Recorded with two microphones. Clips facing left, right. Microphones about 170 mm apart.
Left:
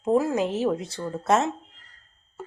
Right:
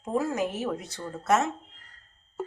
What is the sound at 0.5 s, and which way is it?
Speech, 25° left (ahead or behind).